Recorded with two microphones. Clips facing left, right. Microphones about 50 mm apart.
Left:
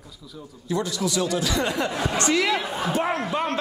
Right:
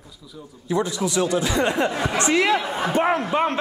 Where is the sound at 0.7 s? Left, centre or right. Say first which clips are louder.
Right 3 dB; right.